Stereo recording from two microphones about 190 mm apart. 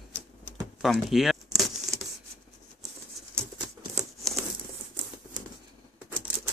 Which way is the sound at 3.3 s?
15° right (ahead or behind).